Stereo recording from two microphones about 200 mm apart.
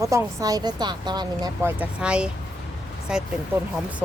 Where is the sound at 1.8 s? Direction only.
5° right (ahead or behind).